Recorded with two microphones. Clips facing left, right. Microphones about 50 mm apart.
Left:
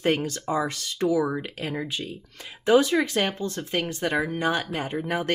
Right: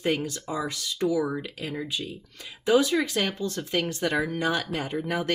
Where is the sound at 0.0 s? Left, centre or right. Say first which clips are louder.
Left 3 dB; left.